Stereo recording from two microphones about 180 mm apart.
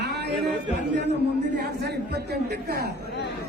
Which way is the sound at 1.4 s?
70° right (ahead or behind).